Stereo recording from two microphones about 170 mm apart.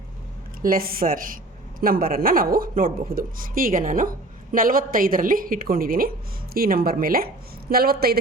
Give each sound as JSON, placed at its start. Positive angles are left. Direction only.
{"t": 0.6, "sound": "speech", "side_deg": -60}